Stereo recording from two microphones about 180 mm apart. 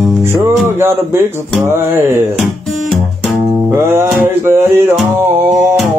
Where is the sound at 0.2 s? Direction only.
15° right (ahead or behind).